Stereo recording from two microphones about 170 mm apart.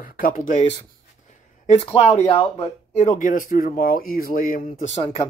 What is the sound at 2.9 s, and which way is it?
Speech, 40° left (ahead or behind).